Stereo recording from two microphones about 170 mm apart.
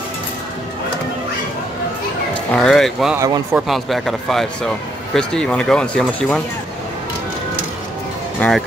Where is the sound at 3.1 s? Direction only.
15° right (ahead or behind).